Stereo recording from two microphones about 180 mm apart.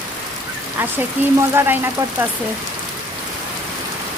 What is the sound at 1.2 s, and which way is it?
Speech, 10° right (ahead or behind).